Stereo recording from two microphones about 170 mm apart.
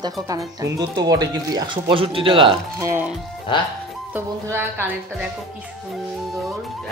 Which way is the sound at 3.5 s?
30° left (ahead or behind).